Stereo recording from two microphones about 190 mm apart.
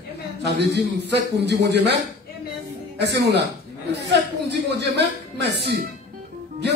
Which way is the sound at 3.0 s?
65° right (ahead or behind).